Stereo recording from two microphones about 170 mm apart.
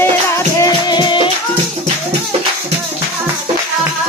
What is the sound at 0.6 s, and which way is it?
Music, 25° left (ahead or behind).